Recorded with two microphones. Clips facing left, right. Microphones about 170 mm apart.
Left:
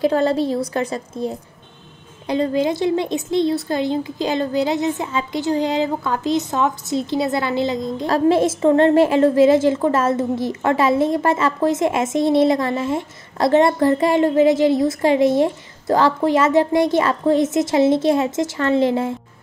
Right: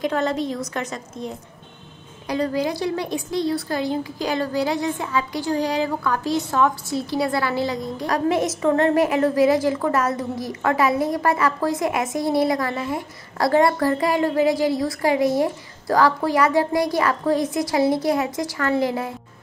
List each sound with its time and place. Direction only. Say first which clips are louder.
0.0 s a woman's voice: left 5 dB; 30° left (ahead or behind)